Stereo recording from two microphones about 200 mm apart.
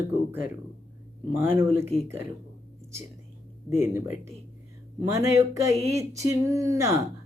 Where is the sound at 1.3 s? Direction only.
10° right (ahead or behind).